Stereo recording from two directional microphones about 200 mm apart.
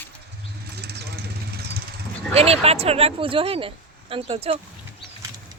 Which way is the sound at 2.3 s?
30° right (ahead or behind).